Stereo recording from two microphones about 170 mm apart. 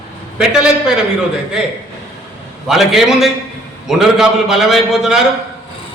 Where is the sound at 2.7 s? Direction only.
Centre (ahead or behind).